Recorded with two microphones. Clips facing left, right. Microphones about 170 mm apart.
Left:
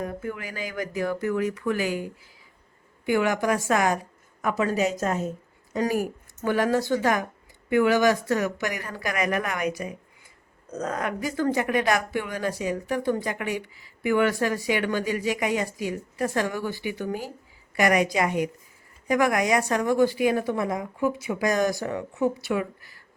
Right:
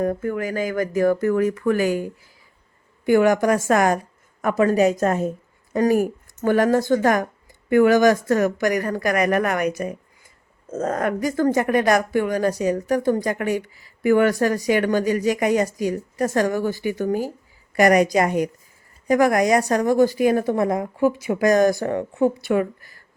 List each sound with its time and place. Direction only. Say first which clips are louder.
0.0 s speech: right 9 dB; 45° right (ahead or behind)
3.1 s a woman's voice: right 7 dB; 45° right (ahead or behind)